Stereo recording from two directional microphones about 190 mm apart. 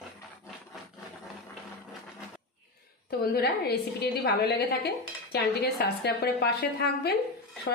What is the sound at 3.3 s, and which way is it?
A woman's voice, 55° left (ahead or behind).